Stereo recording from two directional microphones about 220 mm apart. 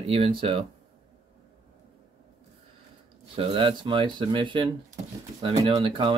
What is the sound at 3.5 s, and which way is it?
Speech, 25° right (ahead or behind).